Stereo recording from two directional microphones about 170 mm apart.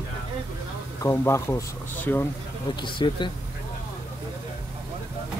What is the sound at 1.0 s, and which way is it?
Speech, 15° left (ahead or behind).